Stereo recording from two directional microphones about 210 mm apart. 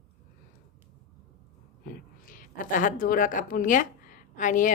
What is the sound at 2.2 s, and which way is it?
Speech, 40° left (ahead or behind).